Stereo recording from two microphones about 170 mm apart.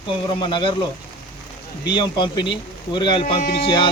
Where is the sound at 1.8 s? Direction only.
25° left (ahead or behind).